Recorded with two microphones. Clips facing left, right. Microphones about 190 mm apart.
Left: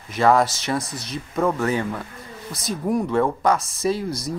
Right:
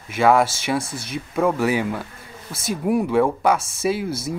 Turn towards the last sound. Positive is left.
turn(degrees=-5)  # may be behind; listen again after turning